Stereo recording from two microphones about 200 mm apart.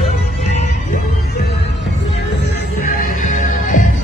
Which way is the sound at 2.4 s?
45° left (ahead or behind).